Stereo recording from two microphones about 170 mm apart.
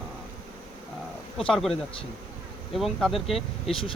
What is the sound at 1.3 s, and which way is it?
Speech, centre (ahead or behind).